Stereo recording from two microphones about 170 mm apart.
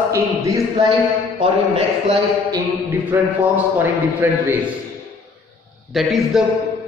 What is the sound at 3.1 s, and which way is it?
Speech, 10° right (ahead or behind).